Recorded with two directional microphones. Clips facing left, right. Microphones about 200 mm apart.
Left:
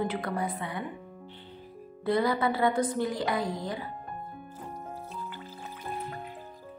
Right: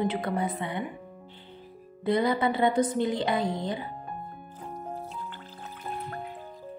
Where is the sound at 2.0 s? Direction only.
20° right (ahead or behind).